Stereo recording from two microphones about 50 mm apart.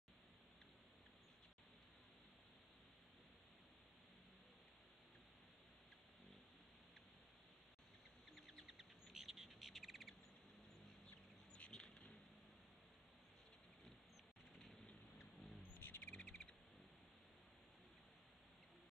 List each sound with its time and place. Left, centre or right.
8.3 s bird: centre
14.5 s a sound: centre
15.6 s bird: left
16.1 s owl: left